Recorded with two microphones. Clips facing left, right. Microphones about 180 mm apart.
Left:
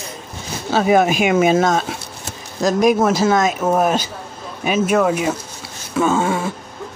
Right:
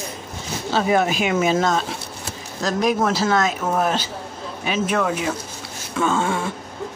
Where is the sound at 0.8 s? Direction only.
15° left (ahead or behind).